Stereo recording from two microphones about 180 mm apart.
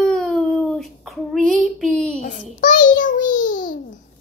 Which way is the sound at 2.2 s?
45° left (ahead or behind).